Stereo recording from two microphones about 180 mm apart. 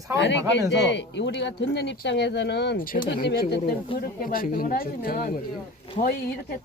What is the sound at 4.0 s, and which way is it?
A woman's voice, 50° left (ahead or behind).